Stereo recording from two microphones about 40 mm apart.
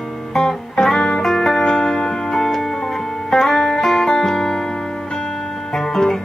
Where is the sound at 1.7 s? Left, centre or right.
Left.